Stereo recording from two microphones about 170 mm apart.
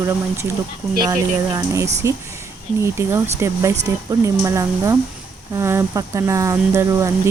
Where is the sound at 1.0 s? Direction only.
20° right (ahead or behind).